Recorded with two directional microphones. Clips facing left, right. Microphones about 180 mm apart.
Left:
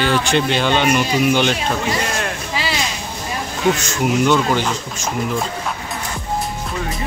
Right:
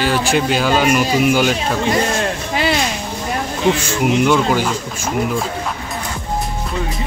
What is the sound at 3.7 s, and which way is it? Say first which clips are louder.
Speech: right 2 dB; 10° right (ahead or behind).